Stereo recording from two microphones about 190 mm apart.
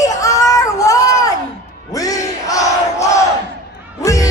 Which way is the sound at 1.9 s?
20° left (ahead or behind).